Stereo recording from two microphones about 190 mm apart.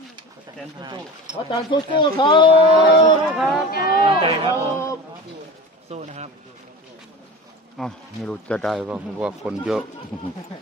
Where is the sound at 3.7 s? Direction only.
50° left (ahead or behind).